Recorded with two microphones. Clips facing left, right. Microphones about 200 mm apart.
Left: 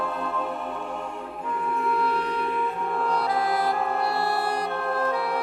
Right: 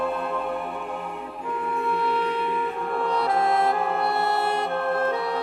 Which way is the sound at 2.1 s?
25° right (ahead or behind).